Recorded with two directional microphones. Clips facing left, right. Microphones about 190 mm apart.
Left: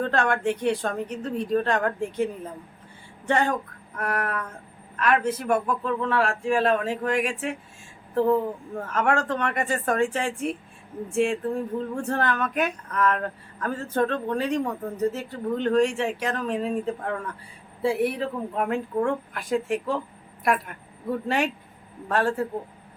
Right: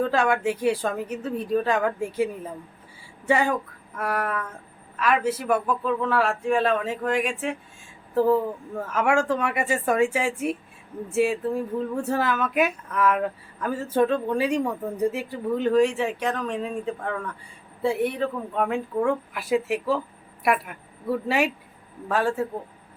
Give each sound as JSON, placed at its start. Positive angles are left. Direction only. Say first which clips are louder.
{"t": 0.0, "sound": "a woman's voice", "louder": "right 2 dB", "side_deg": -5}